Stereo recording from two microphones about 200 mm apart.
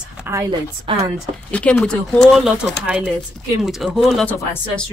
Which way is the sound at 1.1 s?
5° left (ahead or behind).